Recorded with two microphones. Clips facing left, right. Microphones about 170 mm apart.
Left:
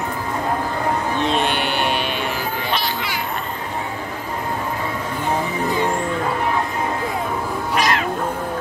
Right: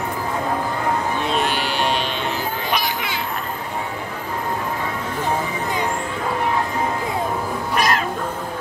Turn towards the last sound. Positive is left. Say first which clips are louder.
# even
turn(degrees=-45)  # may be behind; listen again after turning